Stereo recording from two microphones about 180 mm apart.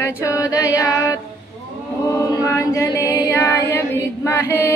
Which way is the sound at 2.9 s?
10° right (ahead or behind).